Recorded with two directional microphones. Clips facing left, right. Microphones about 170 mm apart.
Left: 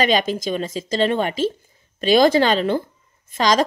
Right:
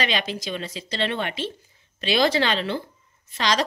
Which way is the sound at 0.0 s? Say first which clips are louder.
Left 8 dB; 45° left (ahead or behind).